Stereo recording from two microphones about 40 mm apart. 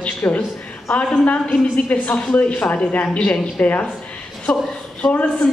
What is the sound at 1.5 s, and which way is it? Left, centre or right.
A woman's voice, left.